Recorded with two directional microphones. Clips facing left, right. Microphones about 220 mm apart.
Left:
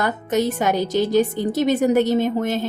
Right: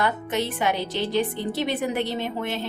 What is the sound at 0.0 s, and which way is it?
A woman's voice, 40° left (ahead or behind).